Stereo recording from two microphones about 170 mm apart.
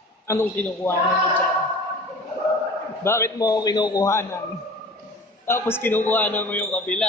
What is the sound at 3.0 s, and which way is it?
A man's voice, 15° left (ahead or behind).